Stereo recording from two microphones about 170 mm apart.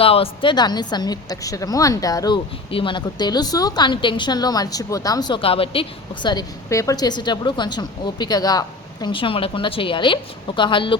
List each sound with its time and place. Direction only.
0.0 s a woman's voice: 35° left (ahead or behind)
6.2 s a woman's voice: 20° left (ahead or behind)